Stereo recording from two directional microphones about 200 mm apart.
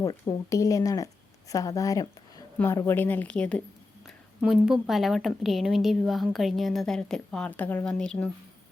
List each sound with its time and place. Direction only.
0.0 s a woman's voice: 15° left (ahead or behind)